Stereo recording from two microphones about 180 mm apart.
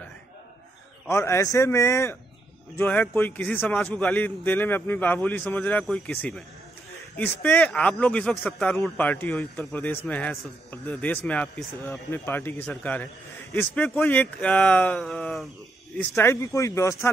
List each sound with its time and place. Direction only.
1.0 s speech: 15° left (ahead or behind)
16.0 s speech: 15° left (ahead or behind)